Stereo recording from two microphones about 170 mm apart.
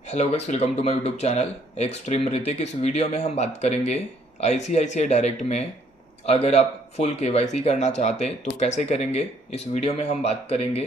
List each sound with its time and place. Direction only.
0.0 s speech: 40° left (ahead or behind)